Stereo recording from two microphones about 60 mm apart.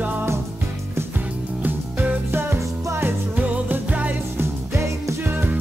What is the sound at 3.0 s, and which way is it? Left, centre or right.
Music, right.